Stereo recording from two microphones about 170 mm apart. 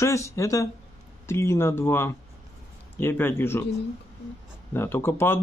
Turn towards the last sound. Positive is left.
turn(degrees=15)  # may be behind; listen again after turning